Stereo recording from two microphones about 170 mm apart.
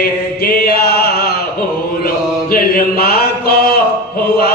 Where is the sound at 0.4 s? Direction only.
65° left (ahead or behind).